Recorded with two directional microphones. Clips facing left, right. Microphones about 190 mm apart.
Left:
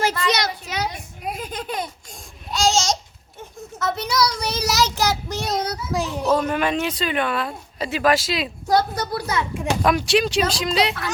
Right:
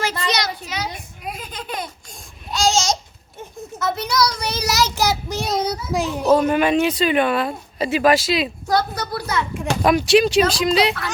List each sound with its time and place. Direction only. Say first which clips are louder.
0.3 s a sound: left 1 dB; 55° left (ahead or behind)
2.5 s babbling: right 1 dB; centre (ahead or behind)
3.8 s child singing: right 1 dB; 5° right (ahead or behind)
5.7 s children playing: right 2 dB; 10° right (ahead or behind)
6.3 s speech: right 6 dB; 10° right (ahead or behind)
8.6 s a sound: left 1 dB; 25° left (ahead or behind)
9.8 s speech: right 5 dB; 5° right (ahead or behind)